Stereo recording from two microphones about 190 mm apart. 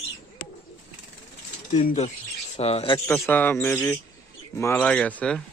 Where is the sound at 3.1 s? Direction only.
10° left (ahead or behind).